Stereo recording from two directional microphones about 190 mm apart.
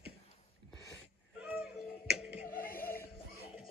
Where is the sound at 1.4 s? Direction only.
5° right (ahead or behind).